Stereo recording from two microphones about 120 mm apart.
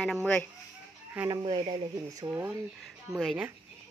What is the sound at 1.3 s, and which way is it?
Speech, 35° right (ahead or behind).